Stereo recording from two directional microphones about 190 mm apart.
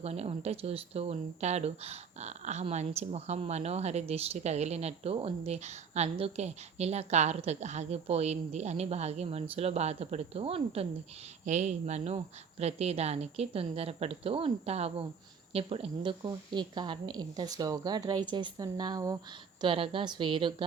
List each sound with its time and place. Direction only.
0.0 s a woman's voice: 35° right (ahead or behind)